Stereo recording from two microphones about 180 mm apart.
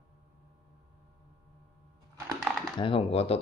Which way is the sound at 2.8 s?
30° left (ahead or behind).